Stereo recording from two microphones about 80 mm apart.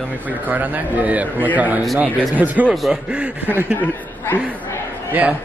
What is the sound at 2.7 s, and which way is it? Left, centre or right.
Speech, centre.